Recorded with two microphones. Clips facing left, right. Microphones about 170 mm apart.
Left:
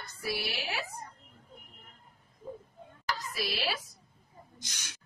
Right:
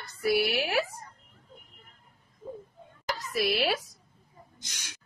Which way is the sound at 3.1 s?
60° right (ahead or behind).